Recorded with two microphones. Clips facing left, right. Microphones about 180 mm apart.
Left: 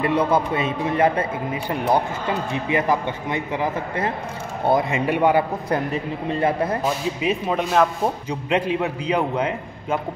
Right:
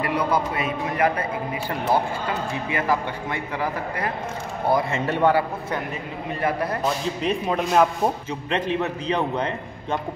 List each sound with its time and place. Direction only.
0.0 s a man's voice: 25° left (ahead or behind)
6.4 s a man's voice: 25° left (ahead or behind)
6.8 s rub: 5° left (ahead or behind)
8.3 s a man's voice: 10° left (ahead or behind)